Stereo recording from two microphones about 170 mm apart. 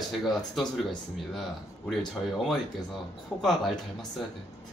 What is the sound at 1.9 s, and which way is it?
Speech, centre (ahead or behind).